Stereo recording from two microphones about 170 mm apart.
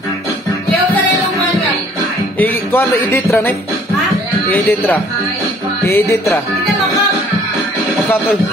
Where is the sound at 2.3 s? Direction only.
10° left (ahead or behind).